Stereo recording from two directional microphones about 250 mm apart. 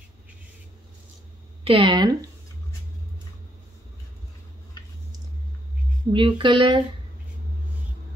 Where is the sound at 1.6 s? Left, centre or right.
Right.